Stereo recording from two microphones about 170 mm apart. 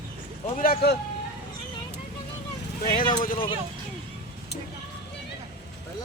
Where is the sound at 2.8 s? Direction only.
55° left (ahead or behind).